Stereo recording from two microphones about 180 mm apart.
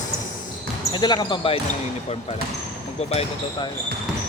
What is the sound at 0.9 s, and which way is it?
Speech, 25° left (ahead or behind).